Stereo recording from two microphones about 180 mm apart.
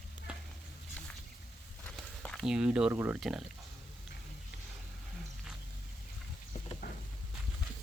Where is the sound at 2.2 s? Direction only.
Centre (ahead or behind).